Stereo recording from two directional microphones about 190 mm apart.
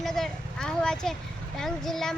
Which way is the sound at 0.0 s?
Centre (ahead or behind).